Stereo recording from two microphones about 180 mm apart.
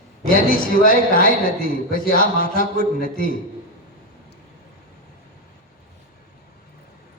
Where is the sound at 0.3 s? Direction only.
50° left (ahead or behind).